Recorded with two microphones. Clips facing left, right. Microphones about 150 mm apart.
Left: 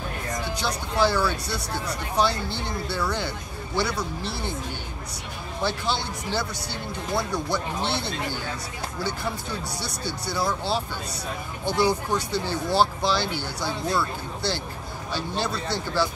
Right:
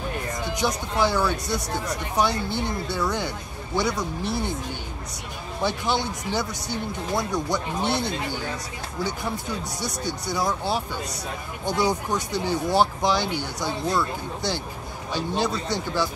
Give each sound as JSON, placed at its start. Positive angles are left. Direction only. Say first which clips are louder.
{"t": 0.6, "sound": "speech", "louder": "right 1 dB", "side_deg": -15}
{"t": 5.6, "sound": "speech", "louder": "right 2 dB", "side_deg": -15}
{"t": 9.8, "sound": "speech", "louder": "right 2 dB", "side_deg": -15}